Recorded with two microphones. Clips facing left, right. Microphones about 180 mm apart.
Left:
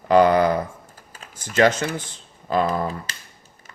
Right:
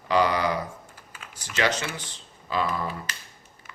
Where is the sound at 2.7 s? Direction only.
35° left (ahead or behind).